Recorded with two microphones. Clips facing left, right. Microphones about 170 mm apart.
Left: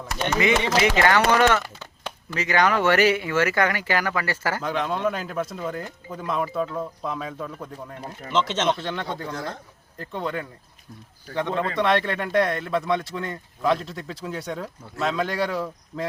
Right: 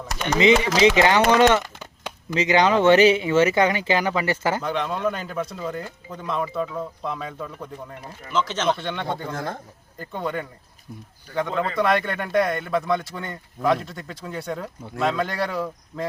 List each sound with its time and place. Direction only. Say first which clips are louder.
0.3 s speech: right 4 dB; 20° right (ahead or behind)
4.6 s speech: even; centre (ahead or behind)
8.3 s speech: even; 20° left (ahead or behind)
8.8 s speech: right 1 dB; centre (ahead or behind)
9.3 s a man's voice: right 2 dB; 50° right (ahead or behind)
10.0 s speech: right 1 dB; 5° right (ahead or behind)